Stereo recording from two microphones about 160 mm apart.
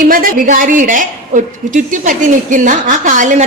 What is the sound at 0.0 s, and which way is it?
A woman's voice, 60° right (ahead or behind).